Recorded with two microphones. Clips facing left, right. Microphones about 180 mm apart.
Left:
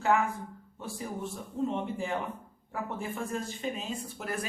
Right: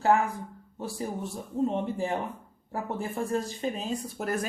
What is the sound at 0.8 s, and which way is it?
Speech, 35° right (ahead or behind).